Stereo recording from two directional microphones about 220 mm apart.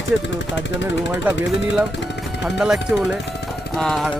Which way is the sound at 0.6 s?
55° left (ahead or behind).